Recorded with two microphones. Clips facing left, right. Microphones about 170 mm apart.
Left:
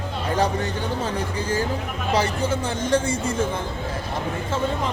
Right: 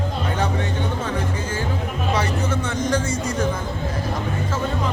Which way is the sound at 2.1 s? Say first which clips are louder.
Left 2 dB; 30° left (ahead or behind).